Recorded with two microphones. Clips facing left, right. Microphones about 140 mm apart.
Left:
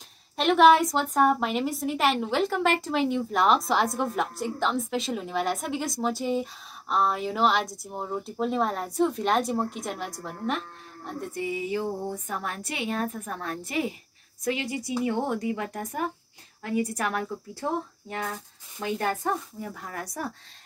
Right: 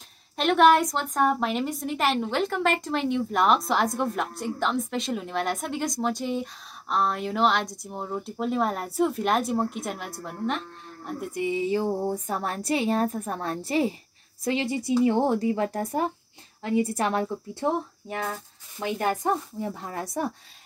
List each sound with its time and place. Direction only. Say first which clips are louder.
0.4 s a woman's voice: left 1 dB; centre (ahead or behind)
11.4 s a woman's voice: right 5 dB; 25° right (ahead or behind)